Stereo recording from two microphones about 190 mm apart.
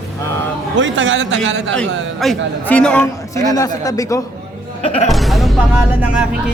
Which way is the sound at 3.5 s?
20° left (ahead or behind).